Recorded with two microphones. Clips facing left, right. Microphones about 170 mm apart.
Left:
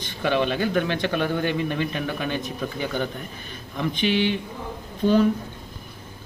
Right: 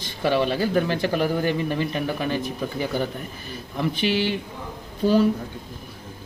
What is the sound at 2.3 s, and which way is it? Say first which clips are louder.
Speech: right 2 dB; 5° right (ahead or behind).